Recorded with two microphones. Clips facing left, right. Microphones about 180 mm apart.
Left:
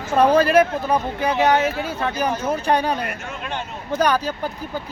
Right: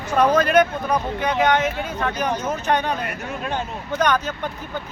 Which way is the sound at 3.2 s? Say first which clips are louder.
Right 3 dB; 40° right (ahead or behind).